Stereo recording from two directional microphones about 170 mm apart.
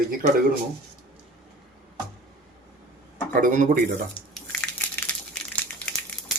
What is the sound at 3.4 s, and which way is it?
Speech, 50° right (ahead or behind).